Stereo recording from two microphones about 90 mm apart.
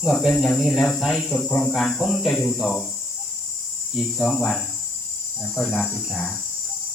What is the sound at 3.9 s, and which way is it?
Speech, 5° left (ahead or behind).